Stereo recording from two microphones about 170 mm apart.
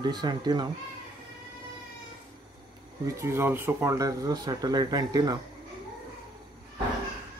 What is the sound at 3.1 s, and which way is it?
Speech, 15° right (ahead or behind).